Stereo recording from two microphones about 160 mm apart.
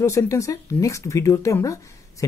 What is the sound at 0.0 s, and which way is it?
Speech, 20° left (ahead or behind).